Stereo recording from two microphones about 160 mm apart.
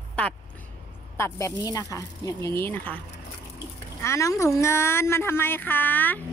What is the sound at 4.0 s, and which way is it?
Speech, 20° left (ahead or behind).